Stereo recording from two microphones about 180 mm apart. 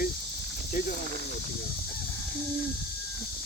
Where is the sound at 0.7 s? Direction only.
50° left (ahead or behind).